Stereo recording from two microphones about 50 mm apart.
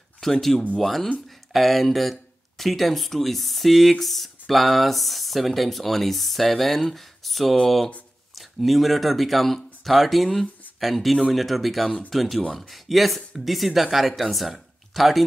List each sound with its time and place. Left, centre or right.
0.2 s speech: centre